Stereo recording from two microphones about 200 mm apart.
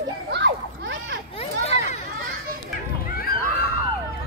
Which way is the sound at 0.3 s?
60° right (ahead or behind).